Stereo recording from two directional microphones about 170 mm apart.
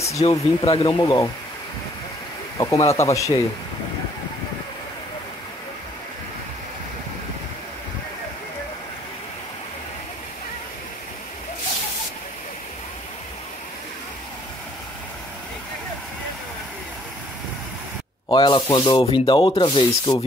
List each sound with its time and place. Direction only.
0.3 s sanding: 30° left (ahead or behind)
2.5 s sanding: 20° left (ahead or behind)
18.3 s sanding: 25° left (ahead or behind)